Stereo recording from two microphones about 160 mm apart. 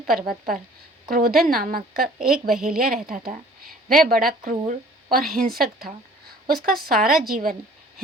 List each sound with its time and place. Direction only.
0.0 s a woman's voice: 65° right (ahead or behind)
2.3 s a woman's voice: centre (ahead or behind)
2.6 s a woman's voice: 65° right (ahead or behind)